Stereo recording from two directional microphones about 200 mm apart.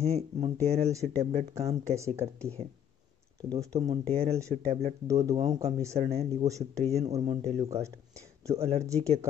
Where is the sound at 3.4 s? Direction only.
15° right (ahead or behind).